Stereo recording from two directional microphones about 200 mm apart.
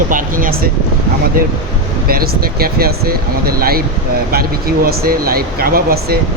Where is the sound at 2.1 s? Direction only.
50° right (ahead or behind).